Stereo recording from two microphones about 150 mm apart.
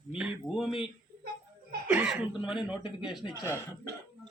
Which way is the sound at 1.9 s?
10° right (ahead or behind).